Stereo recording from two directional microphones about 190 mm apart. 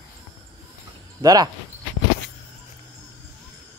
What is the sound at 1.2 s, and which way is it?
Speech, 20° right (ahead or behind).